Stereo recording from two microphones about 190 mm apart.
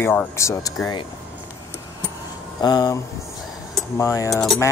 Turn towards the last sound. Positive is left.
turn(degrees=0)  # may be behind; listen again after turning